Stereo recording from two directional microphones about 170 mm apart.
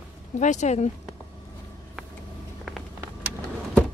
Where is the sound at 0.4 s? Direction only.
45° left (ahead or behind).